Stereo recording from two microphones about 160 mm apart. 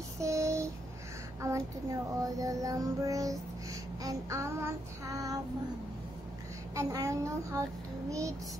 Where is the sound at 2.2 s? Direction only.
20° right (ahead or behind).